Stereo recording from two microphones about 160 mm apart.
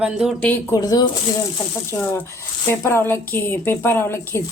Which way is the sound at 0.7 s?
25° left (ahead or behind).